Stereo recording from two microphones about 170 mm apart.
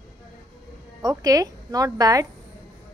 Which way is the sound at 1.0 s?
20° right (ahead or behind).